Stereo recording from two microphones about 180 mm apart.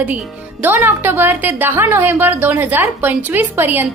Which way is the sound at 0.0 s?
10° right (ahead or behind).